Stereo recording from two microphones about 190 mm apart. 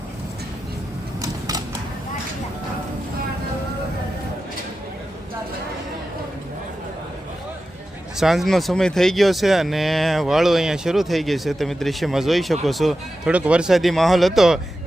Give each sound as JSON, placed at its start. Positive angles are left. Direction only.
{"t": 1.2, "sound": "typewriter", "side_deg": -20}
{"t": 8.2, "sound": "speech", "side_deg": 0}